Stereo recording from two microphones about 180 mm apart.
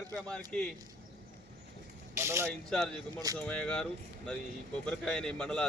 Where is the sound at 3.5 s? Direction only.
5° left (ahead or behind).